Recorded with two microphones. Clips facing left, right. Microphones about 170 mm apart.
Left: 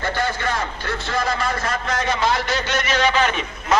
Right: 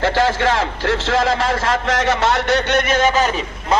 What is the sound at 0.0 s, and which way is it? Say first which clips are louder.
A man's voice: right 7 dB; 90° right.